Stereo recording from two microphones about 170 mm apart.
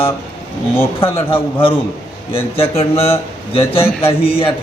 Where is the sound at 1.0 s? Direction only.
30° left (ahead or behind).